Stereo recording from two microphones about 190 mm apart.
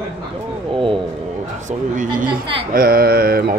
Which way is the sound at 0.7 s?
25° right (ahead or behind).